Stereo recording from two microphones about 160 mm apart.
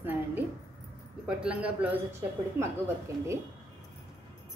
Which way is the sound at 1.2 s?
5° right (ahead or behind).